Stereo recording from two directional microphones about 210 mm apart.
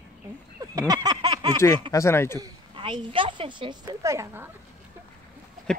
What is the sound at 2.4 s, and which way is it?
A woman's voice, 20° right (ahead or behind).